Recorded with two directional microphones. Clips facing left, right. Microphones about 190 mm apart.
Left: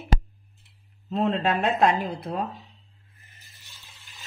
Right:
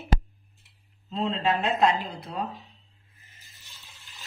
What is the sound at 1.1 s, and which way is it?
A woman's voice, 55° left (ahead or behind).